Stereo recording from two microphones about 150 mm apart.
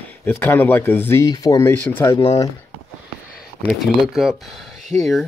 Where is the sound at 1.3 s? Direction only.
25° left (ahead or behind).